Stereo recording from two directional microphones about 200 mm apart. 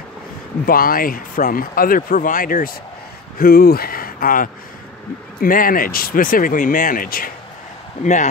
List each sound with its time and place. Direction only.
0.7 s speech: 45° left (ahead or behind)